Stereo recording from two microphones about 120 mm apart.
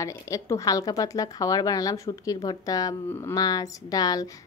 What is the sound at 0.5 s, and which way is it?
Speech, 30° left (ahead or behind).